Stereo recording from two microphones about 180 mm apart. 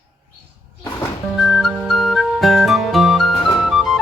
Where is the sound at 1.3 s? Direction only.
Centre (ahead or behind).